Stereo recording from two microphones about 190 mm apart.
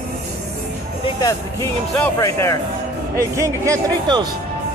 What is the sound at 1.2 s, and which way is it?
Speech, 15° left (ahead or behind).